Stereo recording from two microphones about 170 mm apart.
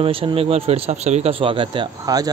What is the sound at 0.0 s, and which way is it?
Speech, 30° right (ahead or behind).